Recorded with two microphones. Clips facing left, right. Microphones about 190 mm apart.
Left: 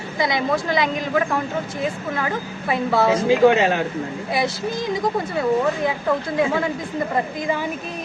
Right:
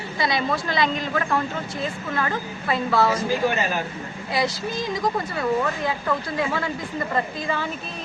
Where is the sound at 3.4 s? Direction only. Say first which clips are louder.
Left 8 dB; 90° left.